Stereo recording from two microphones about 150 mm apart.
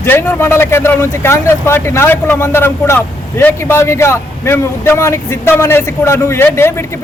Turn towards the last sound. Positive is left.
turn(degrees=15)  # may be behind; listen again after turning